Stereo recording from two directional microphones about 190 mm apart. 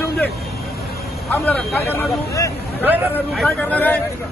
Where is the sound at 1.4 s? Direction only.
Centre (ahead or behind).